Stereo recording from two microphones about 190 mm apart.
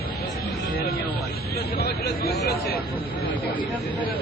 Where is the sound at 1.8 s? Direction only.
55° left (ahead or behind).